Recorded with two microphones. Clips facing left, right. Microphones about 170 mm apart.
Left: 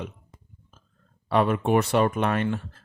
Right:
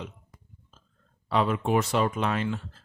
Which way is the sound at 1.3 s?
55° left (ahead or behind).